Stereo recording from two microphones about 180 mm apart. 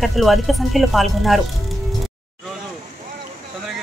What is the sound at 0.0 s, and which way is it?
Speech, centre (ahead or behind).